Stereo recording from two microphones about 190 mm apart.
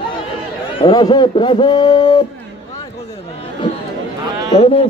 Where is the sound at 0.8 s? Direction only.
20° left (ahead or behind).